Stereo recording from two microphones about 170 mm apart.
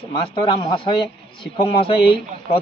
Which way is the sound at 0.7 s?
25° left (ahead or behind).